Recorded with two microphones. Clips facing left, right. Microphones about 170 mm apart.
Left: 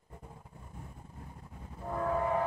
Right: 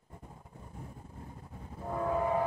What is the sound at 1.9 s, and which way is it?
Train, 15° right (ahead or behind).